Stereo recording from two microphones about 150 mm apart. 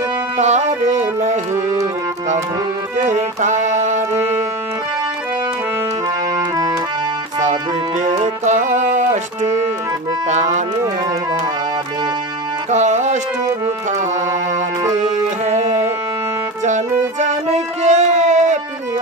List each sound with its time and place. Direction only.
0.4 s music: 50° right (ahead or behind)
3.1 s music: 55° right (ahead or behind)
6.3 s music: 25° right (ahead or behind)
8.0 s music: 55° right (ahead or behind)
12.7 s music: 50° right (ahead or behind)
15.0 s music: 50° right (ahead or behind)
17.2 s music: 50° right (ahead or behind)